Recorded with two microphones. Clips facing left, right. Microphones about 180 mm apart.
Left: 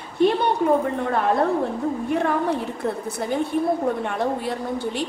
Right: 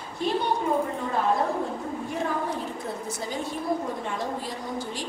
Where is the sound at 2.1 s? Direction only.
65° left (ahead or behind).